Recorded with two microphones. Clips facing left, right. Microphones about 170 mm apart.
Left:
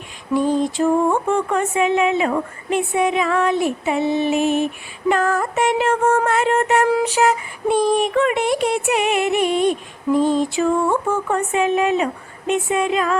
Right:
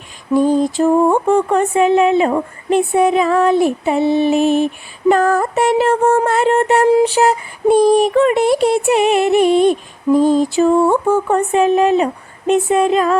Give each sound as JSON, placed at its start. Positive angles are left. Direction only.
{"t": 0.3, "sound": "mantra", "side_deg": -40}